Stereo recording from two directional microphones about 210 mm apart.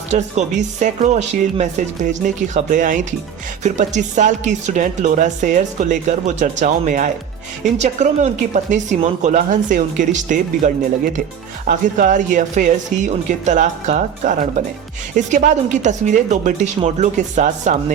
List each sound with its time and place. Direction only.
0.1 s speech: 35° right (ahead or behind)